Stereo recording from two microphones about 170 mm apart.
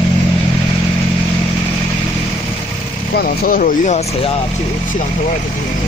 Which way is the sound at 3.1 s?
55° left (ahead or behind).